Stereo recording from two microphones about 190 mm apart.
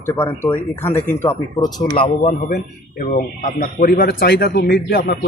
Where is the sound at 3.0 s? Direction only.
45° left (ahead or behind).